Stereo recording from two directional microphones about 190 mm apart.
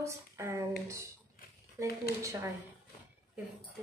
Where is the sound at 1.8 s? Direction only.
15° right (ahead or behind).